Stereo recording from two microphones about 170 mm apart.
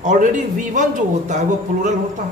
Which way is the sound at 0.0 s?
45° right (ahead or behind).